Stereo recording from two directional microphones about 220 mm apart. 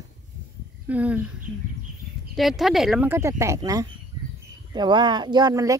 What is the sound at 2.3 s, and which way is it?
Speech, centre (ahead or behind).